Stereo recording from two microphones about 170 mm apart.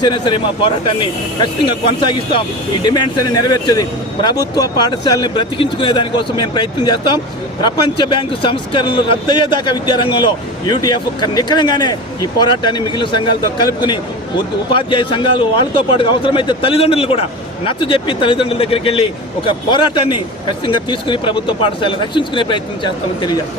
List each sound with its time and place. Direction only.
0.0 s speech: 30° left (ahead or behind)
2.8 s speech: 25° left (ahead or behind)